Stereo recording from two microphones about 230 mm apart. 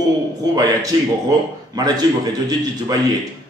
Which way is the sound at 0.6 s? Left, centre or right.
Centre.